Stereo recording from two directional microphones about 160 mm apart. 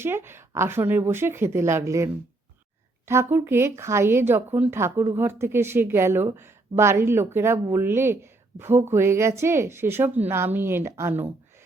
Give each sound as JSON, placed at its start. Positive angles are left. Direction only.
{"t": 0.0, "sound": "speech", "side_deg": -15}
{"t": 3.1, "sound": "speech", "side_deg": -15}